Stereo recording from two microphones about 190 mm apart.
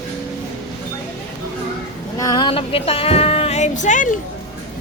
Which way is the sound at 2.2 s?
20° left (ahead or behind).